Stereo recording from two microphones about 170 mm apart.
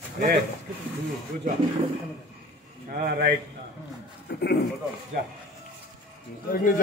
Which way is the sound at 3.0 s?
60° right (ahead or behind).